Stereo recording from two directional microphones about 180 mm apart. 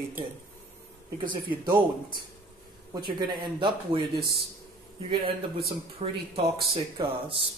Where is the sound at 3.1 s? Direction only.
25° right (ahead or behind).